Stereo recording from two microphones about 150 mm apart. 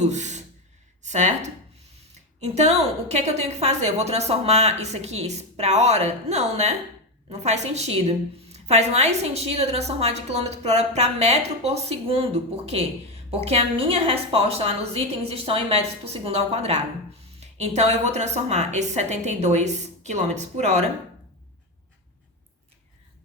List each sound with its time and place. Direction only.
0.0 s a woman's voice: 50° right (ahead or behind)